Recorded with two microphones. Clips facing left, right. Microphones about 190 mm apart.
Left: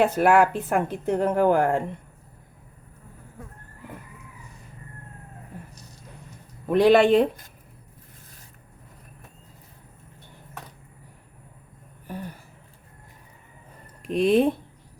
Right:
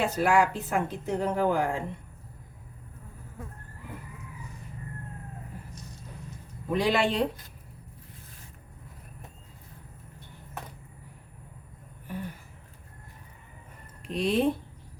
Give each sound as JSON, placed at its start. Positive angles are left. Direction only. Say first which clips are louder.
{"t": 0.0, "sound": "speech", "louder": "left 6 dB", "side_deg": 60}
{"t": 6.7, "sound": "speech", "louder": "left 9 dB", "side_deg": 60}
{"t": 12.0, "sound": "a sound", "louder": "left 1 dB", "side_deg": 40}
{"t": 14.0, "sound": "speech", "louder": "left 7 dB", "side_deg": 50}